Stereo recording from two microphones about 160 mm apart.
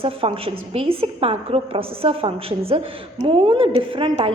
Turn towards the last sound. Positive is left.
turn(degrees=-30)  # may be behind; listen again after turning